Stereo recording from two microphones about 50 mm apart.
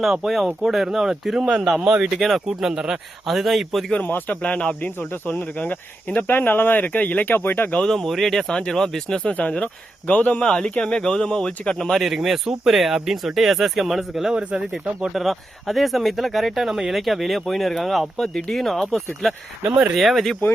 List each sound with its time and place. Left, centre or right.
0.0 s speech: centre
2.5 s speech: centre
3.2 s speech: centre
4.3 s speech: left
4.8 s speech: left
5.3 s speech: left
6.2 s speech: left
7.3 s speech: left
7.9 s speech: centre
9.2 s speech: left
10.4 s speech: centre
11.9 s speech: centre
15.1 s speech: centre